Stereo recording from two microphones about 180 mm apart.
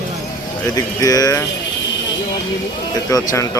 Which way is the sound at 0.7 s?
20° left (ahead or behind).